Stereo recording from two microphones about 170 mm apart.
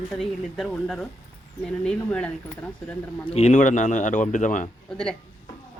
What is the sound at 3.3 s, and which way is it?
Speech, 45° left (ahead or behind).